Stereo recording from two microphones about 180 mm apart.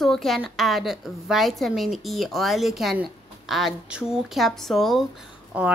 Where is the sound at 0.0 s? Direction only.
Centre (ahead or behind).